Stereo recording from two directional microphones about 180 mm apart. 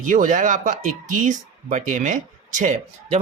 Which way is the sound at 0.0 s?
45° right (ahead or behind).